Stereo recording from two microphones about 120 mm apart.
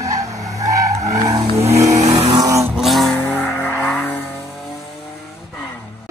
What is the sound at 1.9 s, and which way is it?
Vehicle, 70° right (ahead or behind).